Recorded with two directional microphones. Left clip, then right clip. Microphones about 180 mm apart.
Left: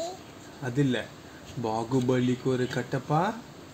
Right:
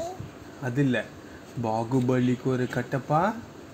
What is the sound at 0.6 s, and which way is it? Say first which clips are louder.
Speech: right 2 dB; 25° right (ahead or behind).